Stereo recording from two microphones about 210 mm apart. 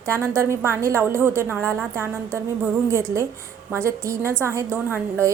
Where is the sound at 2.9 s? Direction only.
10° right (ahead or behind).